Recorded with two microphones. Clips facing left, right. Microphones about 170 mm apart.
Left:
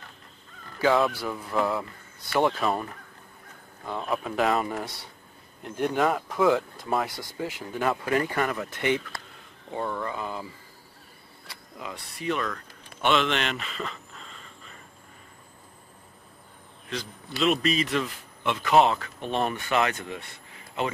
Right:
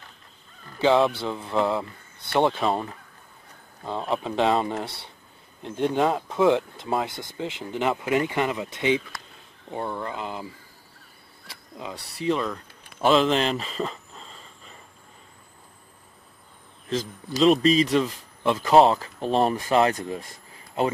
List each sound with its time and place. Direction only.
0.7 s speech: 25° right (ahead or behind)
11.8 s speech: 30° right (ahead or behind)
17.4 s speech: 35° right (ahead or behind)